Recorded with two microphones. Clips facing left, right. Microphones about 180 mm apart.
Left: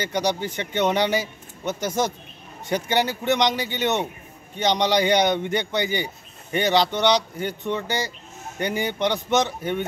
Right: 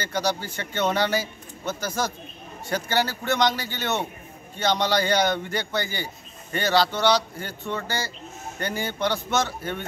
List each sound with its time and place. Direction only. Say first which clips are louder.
0.0 s a man's voice: left 3 dB; 20° left (ahead or behind)